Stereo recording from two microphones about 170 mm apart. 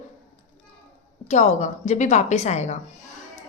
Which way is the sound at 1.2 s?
45° left (ahead or behind).